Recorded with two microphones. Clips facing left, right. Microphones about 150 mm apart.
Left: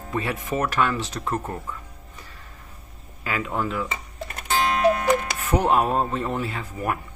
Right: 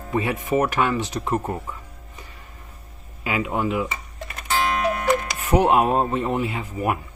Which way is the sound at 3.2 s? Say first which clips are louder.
Right 3 dB; 15° right (ahead or behind).